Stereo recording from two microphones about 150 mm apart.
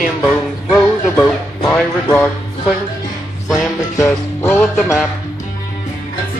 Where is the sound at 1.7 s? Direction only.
15° left (ahead or behind).